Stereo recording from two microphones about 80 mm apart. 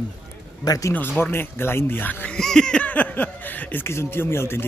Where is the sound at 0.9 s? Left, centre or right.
Left.